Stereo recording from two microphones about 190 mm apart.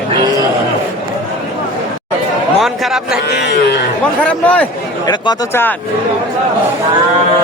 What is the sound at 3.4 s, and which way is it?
Speech, 60° left (ahead or behind).